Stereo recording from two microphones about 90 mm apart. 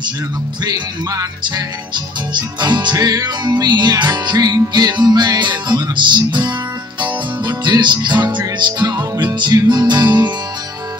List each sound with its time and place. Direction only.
2.3 s music: 55° right (ahead or behind)